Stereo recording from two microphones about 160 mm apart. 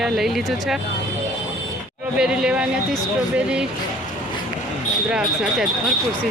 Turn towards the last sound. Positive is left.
turn(degrees=-5)  # may be behind; listen again after turning